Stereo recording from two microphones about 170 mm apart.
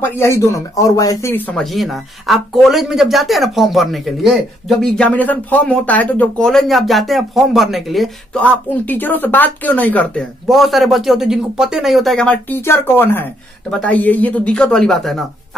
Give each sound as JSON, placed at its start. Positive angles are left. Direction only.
{"t": 0.0, "sound": "speech", "side_deg": 15}
{"t": 1.6, "sound": "speech", "side_deg": 0}